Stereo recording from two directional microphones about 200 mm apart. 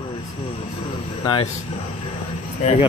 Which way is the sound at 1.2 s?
25° left (ahead or behind).